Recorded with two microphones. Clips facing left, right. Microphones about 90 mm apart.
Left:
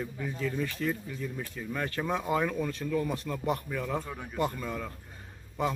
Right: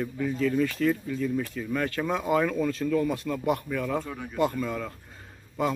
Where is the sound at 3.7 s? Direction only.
15° left (ahead or behind).